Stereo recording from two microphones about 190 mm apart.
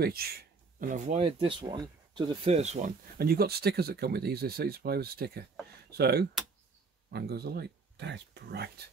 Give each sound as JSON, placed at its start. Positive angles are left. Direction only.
{"t": 0.0, "sound": "speech", "side_deg": -55}
{"t": 3.2, "sound": "speech", "side_deg": -55}